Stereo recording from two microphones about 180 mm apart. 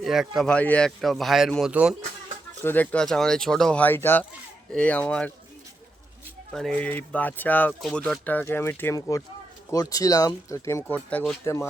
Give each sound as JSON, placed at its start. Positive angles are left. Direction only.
{"t": 0.0, "sound": "a man's voice", "side_deg": 0}
{"t": 2.6, "sound": "speech", "side_deg": 10}
{"t": 6.5, "sound": "speech", "side_deg": 0}